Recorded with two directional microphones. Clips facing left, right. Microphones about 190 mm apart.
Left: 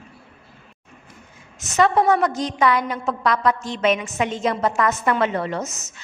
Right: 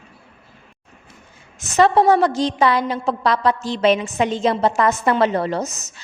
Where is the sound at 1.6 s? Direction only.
30° right (ahead or behind).